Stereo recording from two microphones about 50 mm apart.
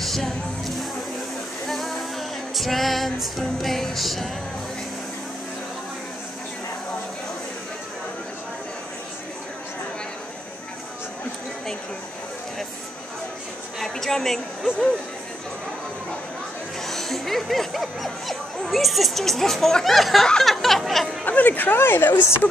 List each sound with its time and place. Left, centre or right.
0.0 s music: centre
13.7 s a woman's voice: centre
16.8 s a sound: centre
21.3 s speech: left
21.7 s speech: left